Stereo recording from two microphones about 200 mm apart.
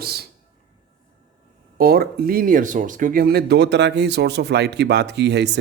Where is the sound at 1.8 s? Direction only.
50° right (ahead or behind).